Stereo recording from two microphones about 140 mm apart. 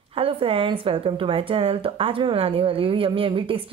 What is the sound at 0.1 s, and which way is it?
Speech, 40° right (ahead or behind).